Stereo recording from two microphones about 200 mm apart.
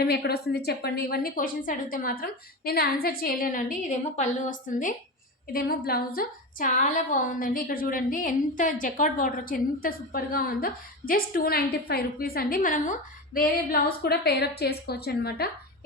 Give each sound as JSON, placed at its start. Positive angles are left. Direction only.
{"t": 0.0, "sound": "a woman's voice", "side_deg": 55}